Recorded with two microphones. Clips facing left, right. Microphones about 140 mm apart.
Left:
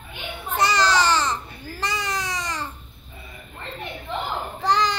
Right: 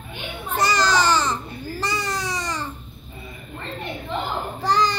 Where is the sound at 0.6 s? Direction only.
5° right (ahead or behind).